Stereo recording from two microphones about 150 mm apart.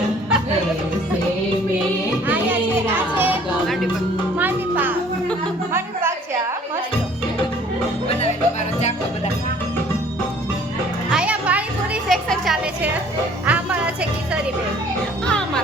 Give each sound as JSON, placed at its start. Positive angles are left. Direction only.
{"t": 2.2, "sound": "children playing", "side_deg": -15}
{"t": 4.4, "sound": "music", "side_deg": -10}
{"t": 11.1, "sound": "music", "side_deg": -5}